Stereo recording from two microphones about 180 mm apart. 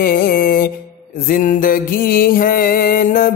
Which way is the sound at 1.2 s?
50° left (ahead or behind).